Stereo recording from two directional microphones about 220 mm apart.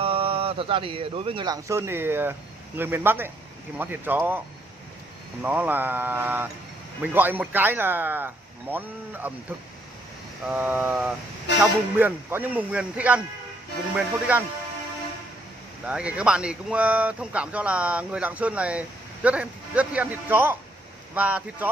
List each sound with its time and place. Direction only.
0.0 s speech: 25° right (ahead or behind); by 4.4 s 10° right (ahead or behind)
5.4 s speech: 5° right (ahead or behind)
10.4 s speech: 5° right (ahead or behind)
15.8 s speech: 5° right (ahead or behind)